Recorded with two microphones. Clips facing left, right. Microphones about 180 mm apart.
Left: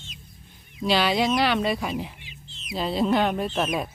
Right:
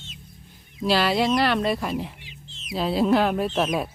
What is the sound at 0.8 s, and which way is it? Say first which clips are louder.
Speech: right 1 dB; centre (ahead or behind).